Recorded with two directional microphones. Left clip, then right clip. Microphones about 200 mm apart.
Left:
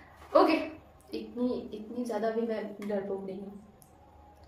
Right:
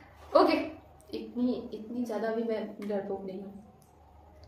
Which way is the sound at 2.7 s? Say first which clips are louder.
Even; 15° right (ahead or behind).